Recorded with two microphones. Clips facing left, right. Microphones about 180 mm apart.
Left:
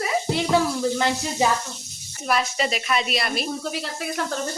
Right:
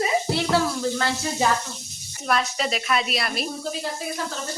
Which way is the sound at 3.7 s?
75° left (ahead or behind).